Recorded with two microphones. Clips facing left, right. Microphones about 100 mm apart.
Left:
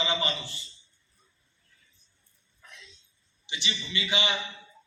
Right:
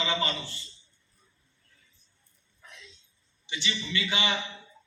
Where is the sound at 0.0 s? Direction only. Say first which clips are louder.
Even; 15° left (ahead or behind).